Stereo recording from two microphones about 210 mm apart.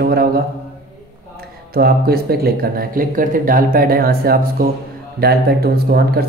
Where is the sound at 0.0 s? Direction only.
45° right (ahead or behind).